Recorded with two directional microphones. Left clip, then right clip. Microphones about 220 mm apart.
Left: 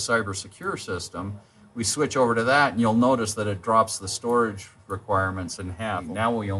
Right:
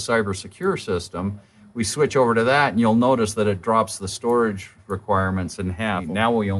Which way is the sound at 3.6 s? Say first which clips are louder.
Right 1 dB; 45° right (ahead or behind).